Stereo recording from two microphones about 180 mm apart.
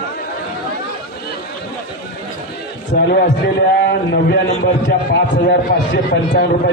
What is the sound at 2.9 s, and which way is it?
A man's voice, 60° left (ahead or behind).